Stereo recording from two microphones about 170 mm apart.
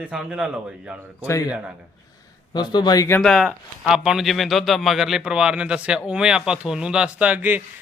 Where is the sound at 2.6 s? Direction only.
25° left (ahead or behind).